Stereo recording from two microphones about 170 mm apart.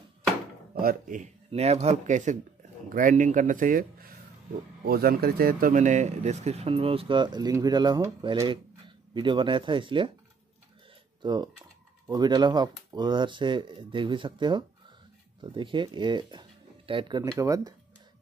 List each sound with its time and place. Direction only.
0.7 s speech: 55° right (ahead or behind)
4.8 s speech: 65° right (ahead or behind); by 10.1 s 30° right (ahead or behind)
11.2 s speech: 25° right (ahead or behind)